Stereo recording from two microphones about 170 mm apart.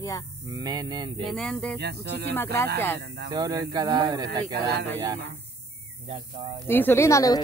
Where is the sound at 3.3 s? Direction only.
20° right (ahead or behind).